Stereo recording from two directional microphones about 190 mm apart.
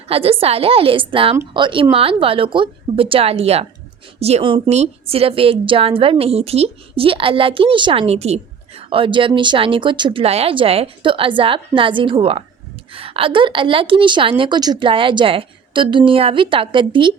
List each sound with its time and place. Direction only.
0.1 s a woman's voice: 30° right (ahead or behind)